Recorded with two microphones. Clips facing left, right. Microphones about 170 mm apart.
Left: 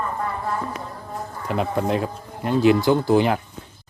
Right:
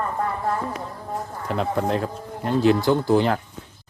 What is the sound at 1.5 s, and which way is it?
Speech, 10° left (ahead or behind).